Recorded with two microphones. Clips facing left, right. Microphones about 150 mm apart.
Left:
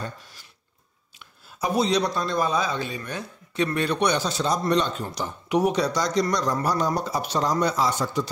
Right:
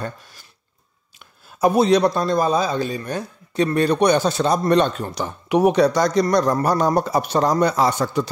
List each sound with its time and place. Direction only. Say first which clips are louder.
1.2 s a man's voice: right 10 dB; 55° right (ahead or behind)